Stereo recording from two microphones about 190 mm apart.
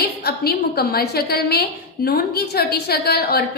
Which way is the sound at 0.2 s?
55° left (ahead or behind).